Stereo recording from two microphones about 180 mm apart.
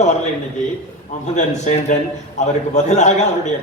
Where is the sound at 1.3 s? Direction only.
40° left (ahead or behind).